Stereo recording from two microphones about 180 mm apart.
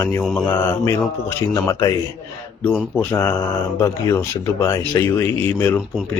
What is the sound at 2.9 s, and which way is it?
Speech, 10° left (ahead or behind).